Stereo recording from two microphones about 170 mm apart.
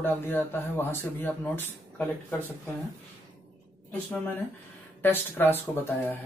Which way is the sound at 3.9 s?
10° left (ahead or behind).